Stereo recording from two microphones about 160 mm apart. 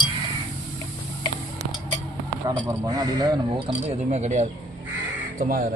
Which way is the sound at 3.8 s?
45° right (ahead or behind).